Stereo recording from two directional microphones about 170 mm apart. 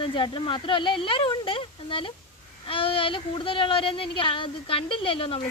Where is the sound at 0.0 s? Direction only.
30° left (ahead or behind).